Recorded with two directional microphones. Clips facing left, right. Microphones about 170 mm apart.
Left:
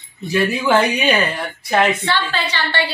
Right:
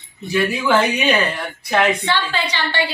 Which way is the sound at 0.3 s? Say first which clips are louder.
Left 1 dB; centre (ahead or behind).